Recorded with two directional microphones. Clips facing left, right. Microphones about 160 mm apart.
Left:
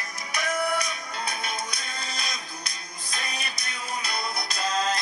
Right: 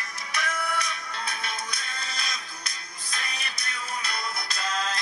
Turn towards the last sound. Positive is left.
turn(degrees=15)  # may be behind; listen again after turning